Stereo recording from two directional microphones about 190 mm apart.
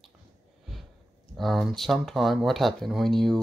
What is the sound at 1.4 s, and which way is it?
Speech, centre (ahead or behind).